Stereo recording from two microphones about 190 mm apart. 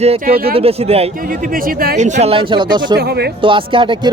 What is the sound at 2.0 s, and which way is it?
A man's voice, 35° right (ahead or behind).